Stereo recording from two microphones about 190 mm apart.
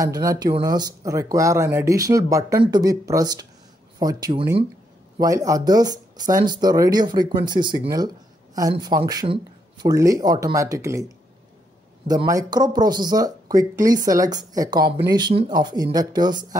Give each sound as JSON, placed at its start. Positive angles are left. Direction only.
{"t": 0.0, "sound": "speech", "side_deg": -15}